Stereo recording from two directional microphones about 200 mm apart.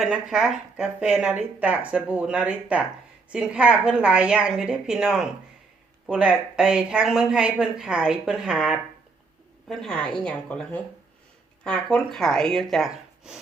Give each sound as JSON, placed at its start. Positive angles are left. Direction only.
{"t": 0.0, "sound": "speech", "side_deg": -5}